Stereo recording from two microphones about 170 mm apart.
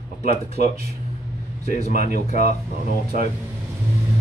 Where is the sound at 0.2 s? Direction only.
40° left (ahead or behind).